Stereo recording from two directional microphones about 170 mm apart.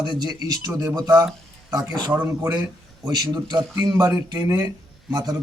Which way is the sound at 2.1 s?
10° right (ahead or behind).